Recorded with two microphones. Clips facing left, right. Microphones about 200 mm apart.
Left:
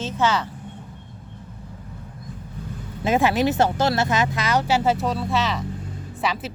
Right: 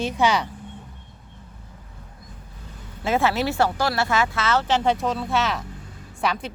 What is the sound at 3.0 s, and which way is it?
Speech, 15° left (ahead or behind).